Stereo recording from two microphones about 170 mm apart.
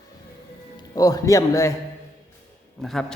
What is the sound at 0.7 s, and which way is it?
A man's voice, 20° left (ahead or behind).